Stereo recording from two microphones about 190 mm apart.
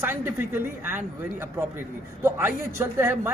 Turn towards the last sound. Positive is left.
turn(degrees=-15)  # may be behind; listen again after turning